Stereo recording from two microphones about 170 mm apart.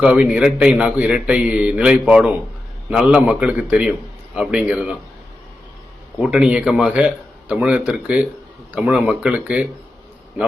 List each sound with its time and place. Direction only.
0.0 s a man's voice: 5° right (ahead or behind)
6.1 s a man's voice: 5° right (ahead or behind)